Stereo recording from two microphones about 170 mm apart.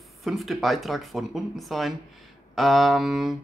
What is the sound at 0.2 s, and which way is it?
Speech, centre (ahead or behind).